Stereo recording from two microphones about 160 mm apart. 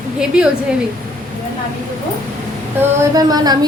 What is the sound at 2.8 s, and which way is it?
Speech, 20° right (ahead or behind).